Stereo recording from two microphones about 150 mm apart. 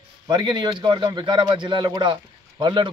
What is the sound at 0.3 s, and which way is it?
A man's voice, 30° right (ahead or behind).